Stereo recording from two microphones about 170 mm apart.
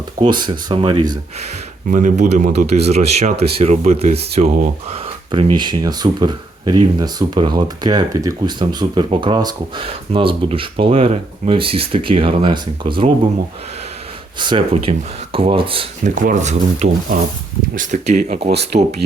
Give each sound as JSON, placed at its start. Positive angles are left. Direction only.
{"t": 0.2, "sound": "speech", "side_deg": -25}
{"t": 1.9, "sound": "speech", "side_deg": -45}
{"t": 14.3, "sound": "speech", "side_deg": -30}
{"t": 16.1, "sound": "speech", "side_deg": -50}
{"t": 18.5, "sound": "speech", "side_deg": -75}